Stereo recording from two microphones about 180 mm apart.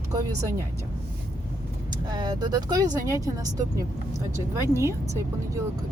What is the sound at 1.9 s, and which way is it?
Speech, 25° right (ahead or behind).